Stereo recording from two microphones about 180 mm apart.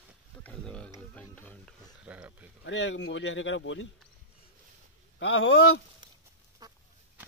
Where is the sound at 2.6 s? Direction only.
90° left.